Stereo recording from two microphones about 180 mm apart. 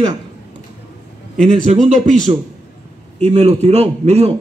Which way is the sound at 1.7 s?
40° right (ahead or behind).